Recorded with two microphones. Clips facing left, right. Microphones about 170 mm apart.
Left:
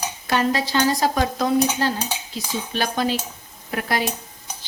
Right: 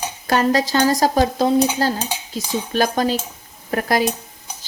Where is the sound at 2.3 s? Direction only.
45° right (ahead or behind).